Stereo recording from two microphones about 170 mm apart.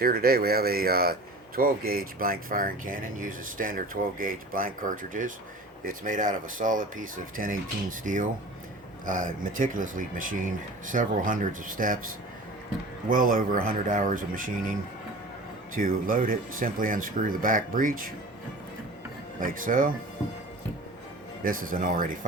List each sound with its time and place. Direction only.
0.0 s speech: 60° right (ahead or behind)
13.1 s speech: 55° right (ahead or behind)
15.7 s speech: 55° right (ahead or behind)
19.4 s speech: 55° right (ahead or behind)
21.4 s speech: 55° right (ahead or behind)